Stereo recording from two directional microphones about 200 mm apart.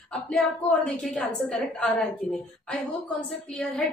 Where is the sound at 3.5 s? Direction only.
Centre (ahead or behind).